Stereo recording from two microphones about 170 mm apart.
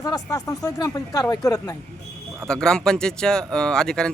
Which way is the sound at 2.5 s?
5° left (ahead or behind).